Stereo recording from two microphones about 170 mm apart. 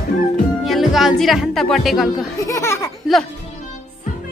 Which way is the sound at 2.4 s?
15° left (ahead or behind).